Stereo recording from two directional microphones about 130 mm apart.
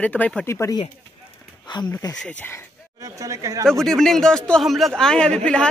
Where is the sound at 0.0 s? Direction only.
10° left (ahead or behind).